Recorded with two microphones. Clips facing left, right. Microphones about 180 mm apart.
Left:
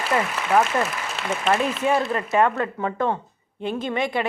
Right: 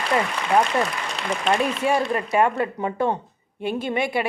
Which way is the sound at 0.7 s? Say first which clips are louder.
Right 1 dB; 5° left (ahead or behind).